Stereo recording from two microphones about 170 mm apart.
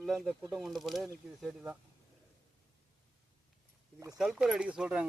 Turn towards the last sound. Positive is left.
turn(degrees=-5)  # may be behind; listen again after turning